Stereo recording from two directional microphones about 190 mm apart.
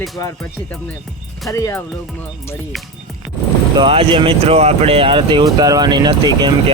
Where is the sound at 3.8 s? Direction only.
25° right (ahead or behind).